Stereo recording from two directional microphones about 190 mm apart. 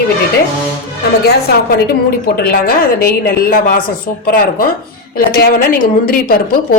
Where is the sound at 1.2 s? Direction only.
55° left (ahead or behind).